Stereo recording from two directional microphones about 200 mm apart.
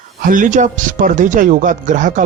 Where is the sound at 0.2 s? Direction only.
40° right (ahead or behind).